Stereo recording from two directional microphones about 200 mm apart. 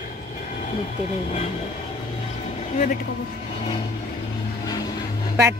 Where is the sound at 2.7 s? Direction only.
40° left (ahead or behind).